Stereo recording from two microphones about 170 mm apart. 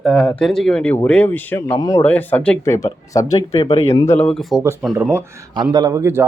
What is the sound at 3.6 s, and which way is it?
Speech, 35° left (ahead or behind).